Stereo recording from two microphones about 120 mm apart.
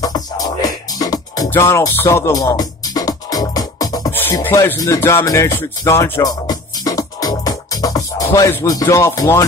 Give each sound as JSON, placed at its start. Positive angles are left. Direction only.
{"t": 0.0, "sound": "music", "side_deg": 30}
{"t": 4.1, "sound": "speech", "side_deg": 20}
{"t": 4.7, "sound": "music", "side_deg": 25}
{"t": 6.4, "sound": "music", "side_deg": 30}